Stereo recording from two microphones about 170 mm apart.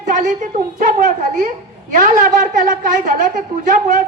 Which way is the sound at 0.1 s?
50° right (ahead or behind).